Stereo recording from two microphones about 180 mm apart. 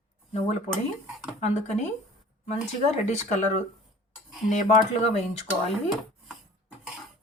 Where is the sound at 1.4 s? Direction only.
40° left (ahead or behind).